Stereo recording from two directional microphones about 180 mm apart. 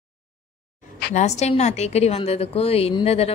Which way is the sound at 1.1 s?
40° left (ahead or behind).